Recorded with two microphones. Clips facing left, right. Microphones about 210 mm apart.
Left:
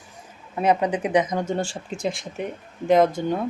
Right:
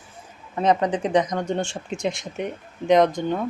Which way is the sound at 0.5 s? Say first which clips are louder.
Even; 10° left (ahead or behind).